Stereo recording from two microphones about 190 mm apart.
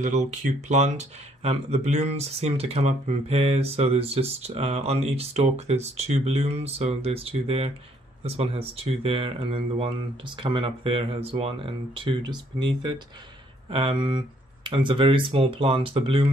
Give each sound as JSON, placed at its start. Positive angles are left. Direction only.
{"t": 0.0, "sound": "speech", "side_deg": -40}